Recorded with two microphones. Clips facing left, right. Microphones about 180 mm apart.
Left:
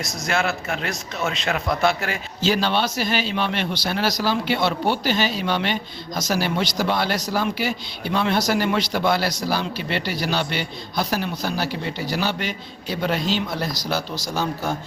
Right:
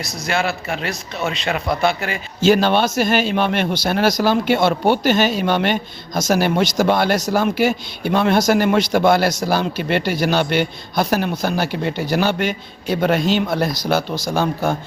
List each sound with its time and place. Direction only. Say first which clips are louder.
0.0 s a man's voice: right 2 dB; centre (ahead or behind)
2.4 s speech: right 7 dB; 50° right (ahead or behind)